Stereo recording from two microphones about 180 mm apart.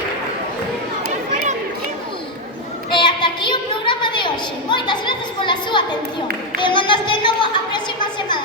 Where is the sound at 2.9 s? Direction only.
25° left (ahead or behind).